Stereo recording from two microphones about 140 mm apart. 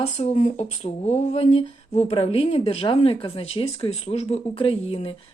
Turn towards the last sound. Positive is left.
turn(degrees=40)  # may be behind; listen again after turning